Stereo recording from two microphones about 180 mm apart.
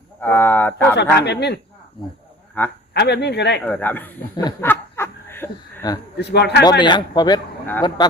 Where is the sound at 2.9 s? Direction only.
70° left (ahead or behind).